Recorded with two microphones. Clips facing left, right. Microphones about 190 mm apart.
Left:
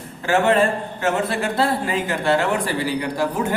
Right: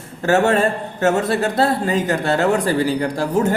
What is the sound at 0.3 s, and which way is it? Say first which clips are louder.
Speech: right 2 dB; 45° right (ahead or behind).